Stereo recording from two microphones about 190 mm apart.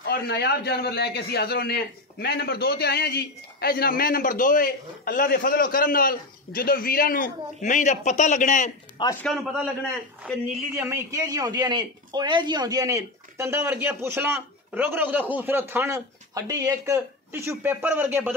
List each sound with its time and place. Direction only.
0.0 s a man's voice: 60° left (ahead or behind); by 8.7 s 40° left (ahead or behind)
9.2 s a man's voice: centre (ahead or behind)
10.8 s speech: 15° right (ahead or behind)